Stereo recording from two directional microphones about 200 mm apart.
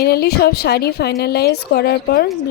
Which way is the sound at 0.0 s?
50° left (ahead or behind).